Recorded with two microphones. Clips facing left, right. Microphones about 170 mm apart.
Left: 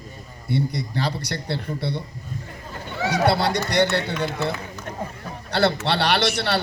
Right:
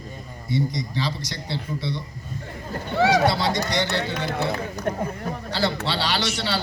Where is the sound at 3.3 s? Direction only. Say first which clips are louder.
Left 2 dB; 60° left (ahead or behind).